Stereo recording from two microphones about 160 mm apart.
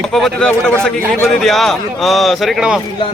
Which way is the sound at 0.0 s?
Centre (ahead or behind).